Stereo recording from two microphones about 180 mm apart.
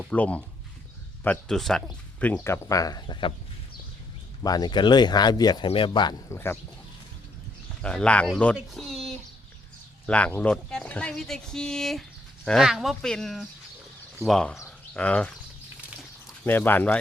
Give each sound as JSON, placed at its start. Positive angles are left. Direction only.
{"t": 0.0, "sound": "speech", "side_deg": 5}
{"t": 4.4, "sound": "speech", "side_deg": 20}
{"t": 6.3, "sound": "speech", "side_deg": 15}
{"t": 7.8, "sound": "speech", "side_deg": 5}
{"t": 16.0, "sound": "a sound", "side_deg": 10}